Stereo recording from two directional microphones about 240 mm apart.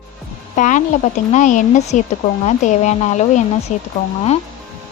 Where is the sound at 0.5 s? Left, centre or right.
Left.